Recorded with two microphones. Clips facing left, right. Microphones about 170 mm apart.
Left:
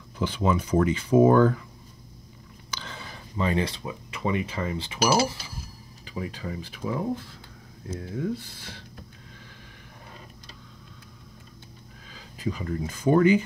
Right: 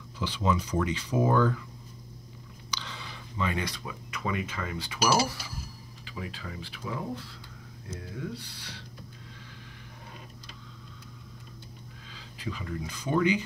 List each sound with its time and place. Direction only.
0.2 s speech: 55° left (ahead or behind)
2.7 s speech: 50° left (ahead or behind); by 5.4 s 25° left (ahead or behind)
6.0 s speech: 40° left (ahead or behind)
12.1 s speech: 45° left (ahead or behind)